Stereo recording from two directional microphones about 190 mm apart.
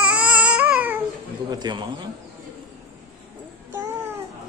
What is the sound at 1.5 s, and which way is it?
Speech, 25° right (ahead or behind).